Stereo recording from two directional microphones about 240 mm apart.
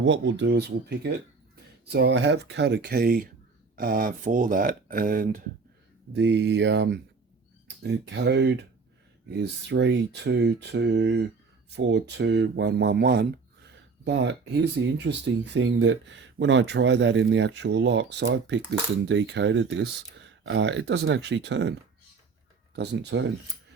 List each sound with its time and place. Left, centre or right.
0.0 s speech: right
6.1 s speech: right